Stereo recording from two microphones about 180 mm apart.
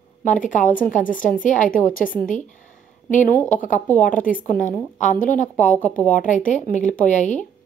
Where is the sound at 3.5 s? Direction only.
45° left (ahead or behind).